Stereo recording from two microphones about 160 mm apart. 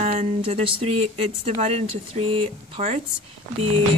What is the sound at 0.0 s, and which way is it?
Speech, 40° right (ahead or behind).